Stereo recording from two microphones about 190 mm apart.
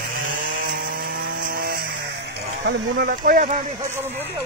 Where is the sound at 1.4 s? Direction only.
50° right (ahead or behind).